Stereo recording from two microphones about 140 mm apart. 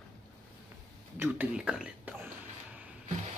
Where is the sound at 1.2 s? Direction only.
10° right (ahead or behind).